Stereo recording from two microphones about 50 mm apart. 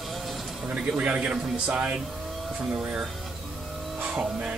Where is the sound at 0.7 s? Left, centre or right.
Right.